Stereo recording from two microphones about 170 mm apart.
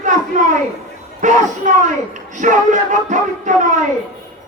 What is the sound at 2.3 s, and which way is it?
Music, 45° right (ahead or behind).